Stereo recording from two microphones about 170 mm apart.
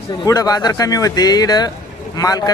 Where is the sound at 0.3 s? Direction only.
20° left (ahead or behind).